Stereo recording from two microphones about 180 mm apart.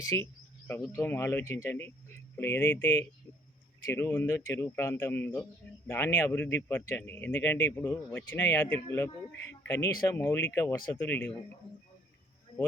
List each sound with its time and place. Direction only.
0.0 s speech: 20° left (ahead or behind)
3.9 s speech: 15° left (ahead or behind)
10.9 s speech: 10° left (ahead or behind)